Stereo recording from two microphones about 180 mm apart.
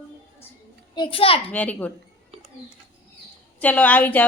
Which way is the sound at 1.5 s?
10° left (ahead or behind).